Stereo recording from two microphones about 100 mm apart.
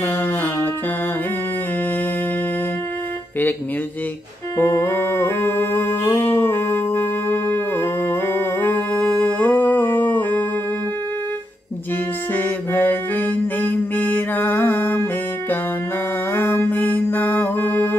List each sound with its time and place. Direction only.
0.0 s music: 25° left (ahead or behind)
4.6 s a sound: 25° left (ahead or behind)
12.4 s music: 20° left (ahead or behind)
16.3 s music: 20° left (ahead or behind)